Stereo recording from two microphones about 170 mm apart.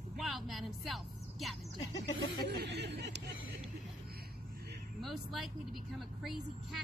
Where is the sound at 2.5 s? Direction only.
90° right.